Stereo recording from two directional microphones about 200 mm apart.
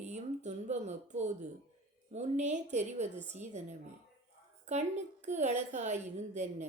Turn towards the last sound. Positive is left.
turn(degrees=-35)  # may be behind; listen again after turning